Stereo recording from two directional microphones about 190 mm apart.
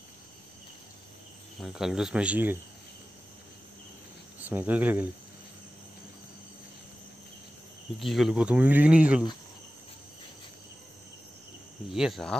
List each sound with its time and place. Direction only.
1.6 s speech: centre (ahead or behind)
4.4 s speech: 10° right (ahead or behind)
8.0 s speech: centre (ahead or behind)
11.9 s speech: centre (ahead or behind)